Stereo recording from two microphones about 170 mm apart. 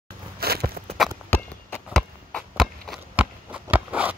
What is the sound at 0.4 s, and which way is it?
Walk, 65° right (ahead or behind).